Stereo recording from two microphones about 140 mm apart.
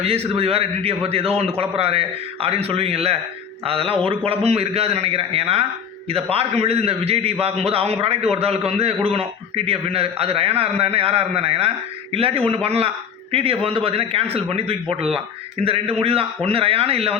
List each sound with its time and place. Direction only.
0.0 s a man's voice: 45° right (ahead or behind)
15.6 s a man's voice: 45° right (ahead or behind)